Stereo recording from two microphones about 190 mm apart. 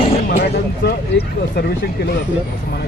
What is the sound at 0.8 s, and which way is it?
Speech, 60° left (ahead or behind).